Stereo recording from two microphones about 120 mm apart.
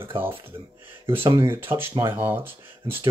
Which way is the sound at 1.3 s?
20° right (ahead or behind).